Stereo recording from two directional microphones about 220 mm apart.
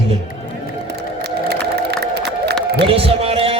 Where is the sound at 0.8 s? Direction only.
50° right (ahead or behind).